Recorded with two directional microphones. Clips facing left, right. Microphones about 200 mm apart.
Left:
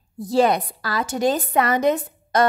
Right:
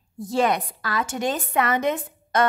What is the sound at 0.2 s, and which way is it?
A woman's voice, 35° left (ahead or behind).